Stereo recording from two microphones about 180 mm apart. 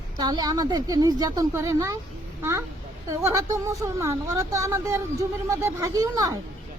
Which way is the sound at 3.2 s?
15° right (ahead or behind).